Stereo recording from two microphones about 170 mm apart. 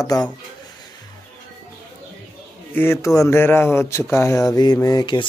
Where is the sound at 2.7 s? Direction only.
15° left (ahead or behind).